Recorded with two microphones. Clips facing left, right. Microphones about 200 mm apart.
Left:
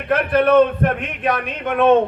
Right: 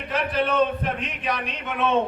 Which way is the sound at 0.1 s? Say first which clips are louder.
Left 10 dB; 55° left (ahead or behind).